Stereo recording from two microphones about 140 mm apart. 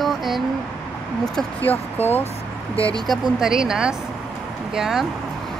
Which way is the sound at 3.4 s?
5° right (ahead or behind).